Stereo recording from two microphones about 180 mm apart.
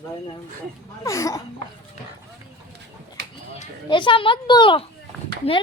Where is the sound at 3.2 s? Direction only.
65° right (ahead or behind).